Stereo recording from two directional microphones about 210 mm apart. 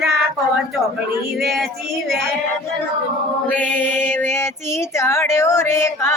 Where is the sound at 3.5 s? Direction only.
5° left (ahead or behind).